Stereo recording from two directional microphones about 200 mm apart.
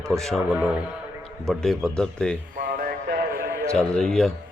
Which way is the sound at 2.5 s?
45° right (ahead or behind).